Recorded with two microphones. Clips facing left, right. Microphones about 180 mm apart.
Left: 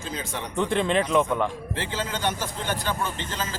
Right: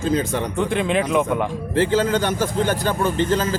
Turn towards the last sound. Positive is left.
turn(degrees=-40)  # may be behind; listen again after turning